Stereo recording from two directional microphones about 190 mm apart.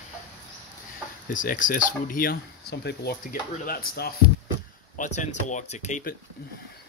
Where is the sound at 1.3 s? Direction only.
45° left (ahead or behind).